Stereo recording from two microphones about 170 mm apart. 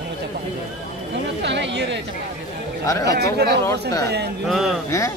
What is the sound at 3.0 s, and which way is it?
Speech, 75° right (ahead or behind).